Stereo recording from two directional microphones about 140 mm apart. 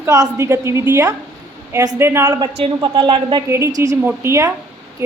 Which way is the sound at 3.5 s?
20° right (ahead or behind).